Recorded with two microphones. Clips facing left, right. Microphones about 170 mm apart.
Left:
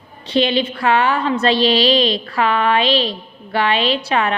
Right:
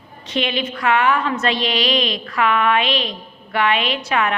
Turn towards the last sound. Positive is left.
turn(degrees=30)  # may be behind; listen again after turning